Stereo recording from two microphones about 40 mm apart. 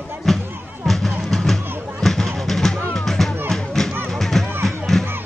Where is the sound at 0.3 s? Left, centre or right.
Centre.